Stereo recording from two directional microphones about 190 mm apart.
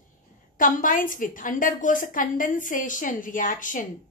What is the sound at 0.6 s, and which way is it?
A woman's voice, 45° left (ahead or behind).